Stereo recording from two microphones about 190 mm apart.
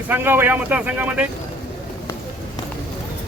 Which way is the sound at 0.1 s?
10° right (ahead or behind).